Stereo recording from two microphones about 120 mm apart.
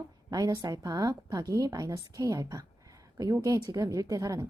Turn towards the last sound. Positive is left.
turn(degrees=-30)  # may be behind; listen again after turning